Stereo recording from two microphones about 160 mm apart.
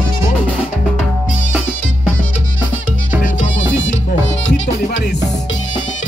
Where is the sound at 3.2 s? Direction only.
50° left (ahead or behind).